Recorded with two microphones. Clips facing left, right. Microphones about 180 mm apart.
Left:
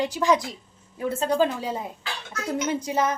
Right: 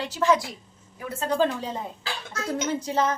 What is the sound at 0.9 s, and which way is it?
Speech, 25° left (ahead or behind).